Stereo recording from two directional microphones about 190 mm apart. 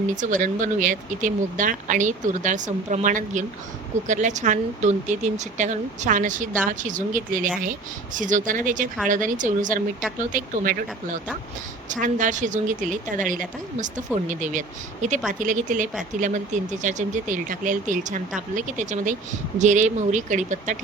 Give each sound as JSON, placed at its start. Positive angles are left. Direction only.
{"t": 0.2, "sound": "a woman's voice", "side_deg": -40}